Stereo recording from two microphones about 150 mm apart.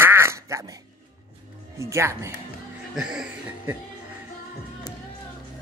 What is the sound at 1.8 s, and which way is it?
Speech, 20° right (ahead or behind).